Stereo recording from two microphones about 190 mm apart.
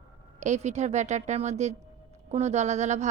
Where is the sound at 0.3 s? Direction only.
40° right (ahead or behind).